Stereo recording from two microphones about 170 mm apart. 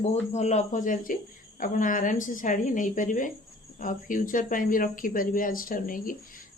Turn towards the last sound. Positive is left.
turn(degrees=55)  # may be behind; listen again after turning